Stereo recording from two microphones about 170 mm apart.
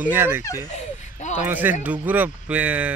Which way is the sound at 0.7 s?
45° left (ahead or behind).